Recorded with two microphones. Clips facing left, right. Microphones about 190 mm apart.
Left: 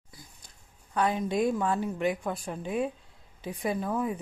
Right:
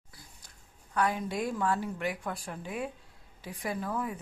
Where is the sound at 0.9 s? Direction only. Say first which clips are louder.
Left 3 dB; 20° left (ahead or behind).